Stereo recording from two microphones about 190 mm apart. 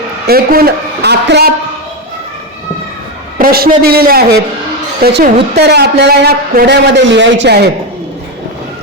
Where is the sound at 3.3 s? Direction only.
50° right (ahead or behind).